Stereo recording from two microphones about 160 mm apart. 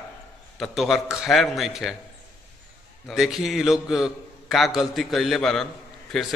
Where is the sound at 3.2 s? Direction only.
Centre (ahead or behind).